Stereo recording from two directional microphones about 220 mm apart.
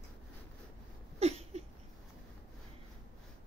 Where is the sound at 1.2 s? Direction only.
30° right (ahead or behind).